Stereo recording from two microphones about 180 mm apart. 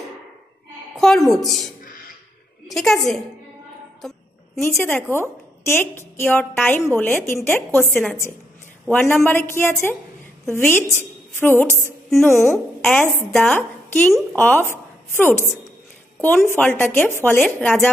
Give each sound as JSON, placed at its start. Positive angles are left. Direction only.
{"t": 0.9, "sound": "a woman's voice", "side_deg": 0}
{"t": 1.8, "sound": "music", "side_deg": 50}
{"t": 2.7, "sound": "a woman's voice", "side_deg": 0}
{"t": 4.6, "sound": "speech", "side_deg": 10}
{"t": 12.1, "sound": "speech", "side_deg": 0}